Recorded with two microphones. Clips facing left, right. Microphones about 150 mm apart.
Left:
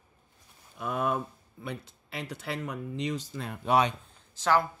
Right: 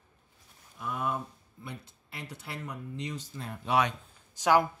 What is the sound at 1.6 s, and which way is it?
Speech, 90° left.